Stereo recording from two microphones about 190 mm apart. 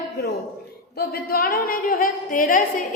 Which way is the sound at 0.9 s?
55° left (ahead or behind).